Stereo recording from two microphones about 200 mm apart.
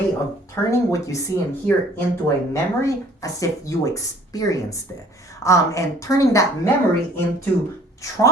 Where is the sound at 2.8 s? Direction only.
15° left (ahead or behind).